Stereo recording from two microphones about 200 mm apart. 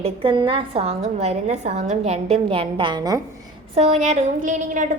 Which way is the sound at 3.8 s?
35° right (ahead or behind).